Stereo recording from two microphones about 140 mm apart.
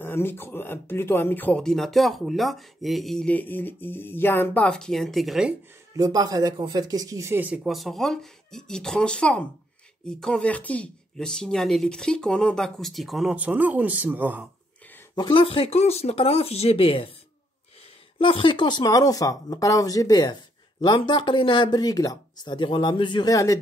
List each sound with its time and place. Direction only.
0.0 s speech: 15° left (ahead or behind); by 5.5 s centre (ahead or behind)
5.9 s speech: 25° right (ahead or behind)
15.1 s speech: 35° left (ahead or behind)
18.2 s speech: 35° left (ahead or behind)